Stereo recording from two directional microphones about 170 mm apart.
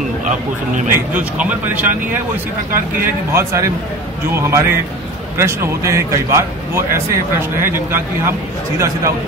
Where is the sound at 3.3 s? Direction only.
15° right (ahead or behind).